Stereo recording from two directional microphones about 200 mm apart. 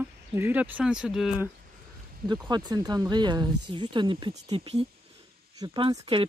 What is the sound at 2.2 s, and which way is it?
Speech, 20° right (ahead or behind).